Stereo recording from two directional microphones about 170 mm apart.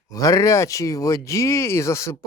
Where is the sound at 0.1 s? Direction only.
20° left (ahead or behind).